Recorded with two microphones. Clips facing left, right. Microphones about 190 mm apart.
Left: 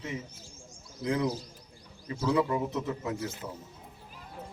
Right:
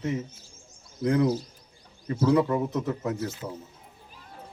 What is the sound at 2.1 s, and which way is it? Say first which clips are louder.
A man's voice: right 5 dB; 40° right (ahead or behind).